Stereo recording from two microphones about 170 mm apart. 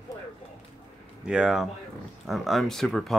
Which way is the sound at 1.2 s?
5° right (ahead or behind).